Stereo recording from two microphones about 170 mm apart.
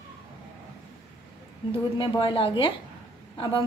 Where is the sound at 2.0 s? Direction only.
30° left (ahead or behind).